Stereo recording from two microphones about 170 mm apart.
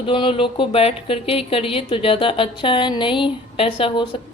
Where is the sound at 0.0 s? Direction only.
30° left (ahead or behind).